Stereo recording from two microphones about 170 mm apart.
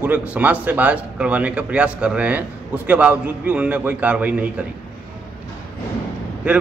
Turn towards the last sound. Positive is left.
turn(degrees=-5)  # may be behind; listen again after turning